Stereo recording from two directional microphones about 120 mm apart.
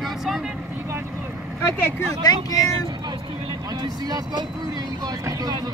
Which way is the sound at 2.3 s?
30° left (ahead or behind).